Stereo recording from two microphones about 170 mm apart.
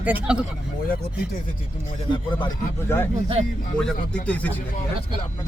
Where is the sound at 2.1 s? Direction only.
25° left (ahead or behind).